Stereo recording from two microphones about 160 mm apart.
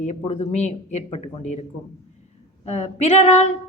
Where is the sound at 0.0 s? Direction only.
45° left (ahead or behind).